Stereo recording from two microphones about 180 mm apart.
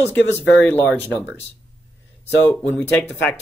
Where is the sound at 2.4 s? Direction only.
10° left (ahead or behind).